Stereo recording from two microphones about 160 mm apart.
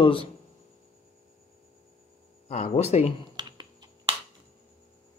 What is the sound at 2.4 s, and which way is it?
Speech, 45° left (ahead or behind).